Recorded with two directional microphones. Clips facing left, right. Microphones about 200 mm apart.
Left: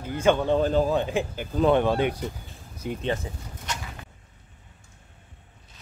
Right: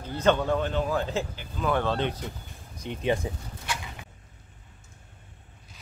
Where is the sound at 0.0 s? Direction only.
10° left (ahead or behind).